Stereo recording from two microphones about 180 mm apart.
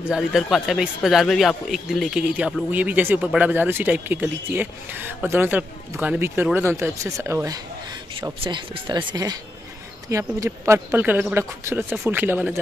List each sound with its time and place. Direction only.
0.1 s speech: centre (ahead or behind)